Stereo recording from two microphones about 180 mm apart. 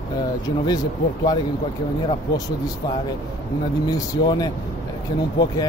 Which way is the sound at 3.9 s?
20° left (ahead or behind).